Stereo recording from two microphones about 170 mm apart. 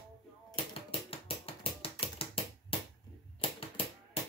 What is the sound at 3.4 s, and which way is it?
Typewriter, 35° left (ahead or behind).